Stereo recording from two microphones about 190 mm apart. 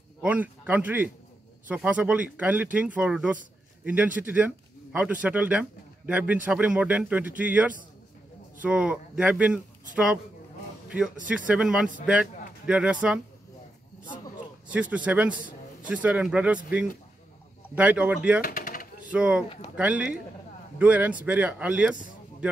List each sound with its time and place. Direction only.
0.2 s a man's voice: 10° right (ahead or behind)
10.9 s a man's voice: 5° right (ahead or behind)
14.7 s speech: 5° right (ahead or behind)
17.7 s speech: 5° right (ahead or behind)
18.4 s a sound: 50° left (ahead or behind)
19.0 s a man's voice: 5° right (ahead or behind)